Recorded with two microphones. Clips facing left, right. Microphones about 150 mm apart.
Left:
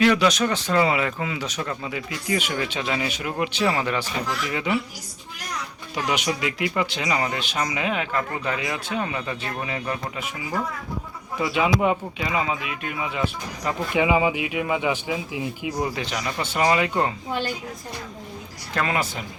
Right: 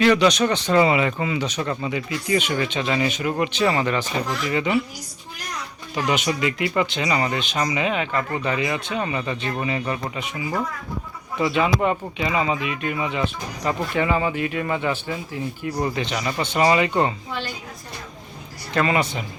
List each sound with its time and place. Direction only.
0.0 s speech: 5° left (ahead or behind)
5.9 s speech: 10° left (ahead or behind)
18.7 s speech: centre (ahead or behind)